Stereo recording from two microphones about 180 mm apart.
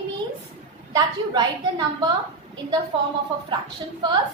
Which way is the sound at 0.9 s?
25° right (ahead or behind).